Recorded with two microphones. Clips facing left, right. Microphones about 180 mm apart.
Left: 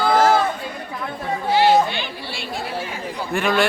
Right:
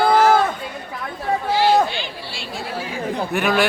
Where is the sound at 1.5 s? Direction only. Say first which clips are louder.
Left 2 dB; 60° left (ahead or behind).